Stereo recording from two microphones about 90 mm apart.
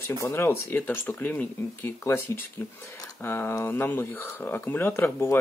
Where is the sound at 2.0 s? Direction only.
30° left (ahead or behind).